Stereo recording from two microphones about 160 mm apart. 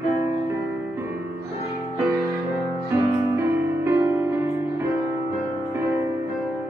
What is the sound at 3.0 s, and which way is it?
Music, 15° right (ahead or behind).